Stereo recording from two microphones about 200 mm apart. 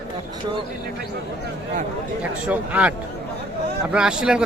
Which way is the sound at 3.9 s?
5° right (ahead or behind).